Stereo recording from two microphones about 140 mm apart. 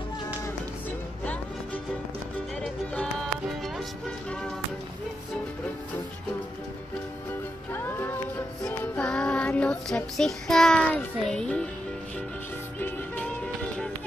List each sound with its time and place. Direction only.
1.2 s music: 10° left (ahead or behind)
7.7 s music: 15° left (ahead or behind)
8.6 s child singing: 5° left (ahead or behind)
12.7 s music: 10° left (ahead or behind)